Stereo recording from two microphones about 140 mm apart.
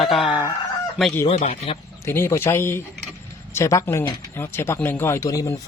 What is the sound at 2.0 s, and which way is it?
Speech, 20° left (ahead or behind).